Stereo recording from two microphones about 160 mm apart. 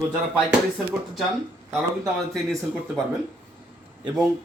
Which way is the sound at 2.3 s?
Centre (ahead or behind).